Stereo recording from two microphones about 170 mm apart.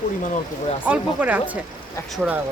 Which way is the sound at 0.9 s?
10° right (ahead or behind).